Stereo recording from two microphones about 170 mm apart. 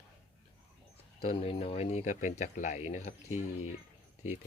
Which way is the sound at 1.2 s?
35° left (ahead or behind).